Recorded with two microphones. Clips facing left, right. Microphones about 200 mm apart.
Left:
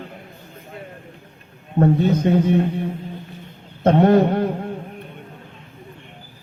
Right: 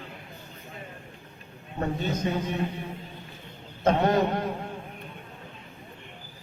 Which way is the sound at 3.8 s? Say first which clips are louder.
Left 8 dB; 60° left (ahead or behind).